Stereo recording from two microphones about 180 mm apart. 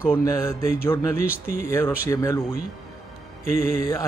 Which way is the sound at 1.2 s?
55° left (ahead or behind).